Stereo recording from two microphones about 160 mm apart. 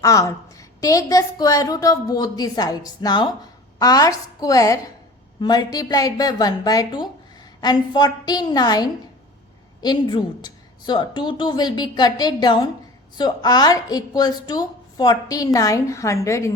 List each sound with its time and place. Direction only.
0.0 s a woman's voice: 20° left (ahead or behind)